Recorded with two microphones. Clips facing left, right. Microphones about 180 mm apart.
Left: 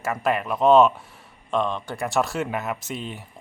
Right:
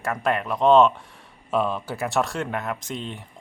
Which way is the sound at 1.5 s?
5° right (ahead or behind).